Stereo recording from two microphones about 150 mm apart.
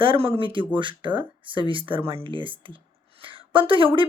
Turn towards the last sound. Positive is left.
turn(degrees=-35)  # may be behind; listen again after turning